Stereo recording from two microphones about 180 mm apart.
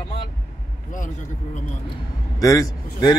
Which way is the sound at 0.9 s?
45° left (ahead or behind).